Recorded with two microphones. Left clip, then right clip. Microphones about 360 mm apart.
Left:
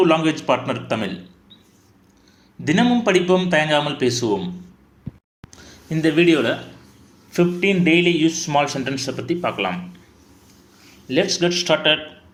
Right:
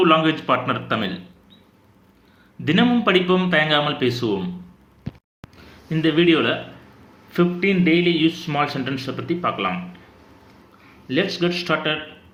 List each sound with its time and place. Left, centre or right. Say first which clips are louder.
0.0 s a man's voice: even; centre
2.6 s a man's voice: even; centre
5.9 s speech: left 1 dB; left
11.3 s speech: left 3 dB; centre